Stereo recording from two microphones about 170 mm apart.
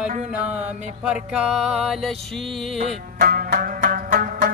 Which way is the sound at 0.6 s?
5° right (ahead or behind).